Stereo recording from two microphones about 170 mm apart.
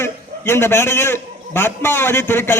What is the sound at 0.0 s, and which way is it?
A man's voice, 15° left (ahead or behind).